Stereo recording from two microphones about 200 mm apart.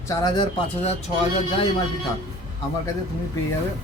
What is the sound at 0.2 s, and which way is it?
Speech, 20° left (ahead or behind).